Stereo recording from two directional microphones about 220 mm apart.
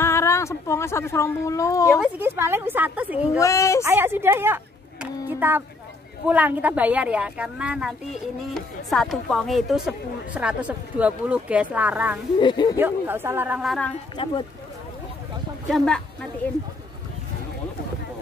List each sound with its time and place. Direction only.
0.0 s speech: 10° left (ahead or behind)
1.9 s a woman's voice: 5° right (ahead or behind)
3.3 s speech: 15° left (ahead or behind)
3.8 s a woman's voice: 10° right (ahead or behind)
12.4 s speech: 20° left (ahead or behind)
12.7 s a woman's voice: 10° right (ahead or behind)
14.1 s speech: 20° left (ahead or behind)
15.7 s a woman's voice: 5° left (ahead or behind)